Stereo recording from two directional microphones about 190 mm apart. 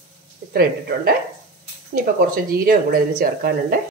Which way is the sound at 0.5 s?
55° right (ahead or behind).